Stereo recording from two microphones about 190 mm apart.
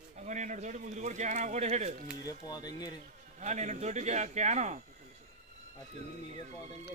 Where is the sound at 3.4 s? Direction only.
40° right (ahead or behind).